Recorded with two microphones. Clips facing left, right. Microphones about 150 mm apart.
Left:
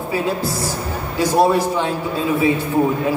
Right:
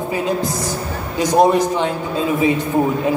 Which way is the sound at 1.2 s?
20° right (ahead or behind).